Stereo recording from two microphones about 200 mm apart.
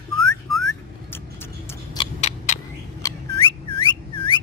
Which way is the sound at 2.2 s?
35° left (ahead or behind).